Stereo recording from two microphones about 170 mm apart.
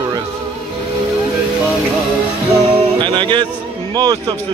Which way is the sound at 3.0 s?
30° right (ahead or behind).